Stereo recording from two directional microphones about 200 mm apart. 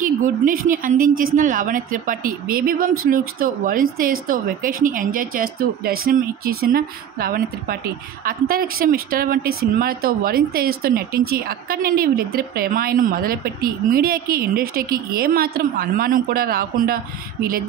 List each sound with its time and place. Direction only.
0.0 s speech: 40° right (ahead or behind)